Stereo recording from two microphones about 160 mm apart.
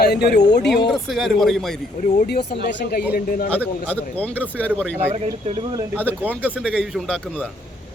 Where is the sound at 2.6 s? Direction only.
70° left (ahead or behind).